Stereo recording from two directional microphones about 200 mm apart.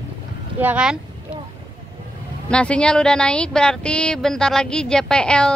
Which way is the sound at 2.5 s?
5° left (ahead or behind).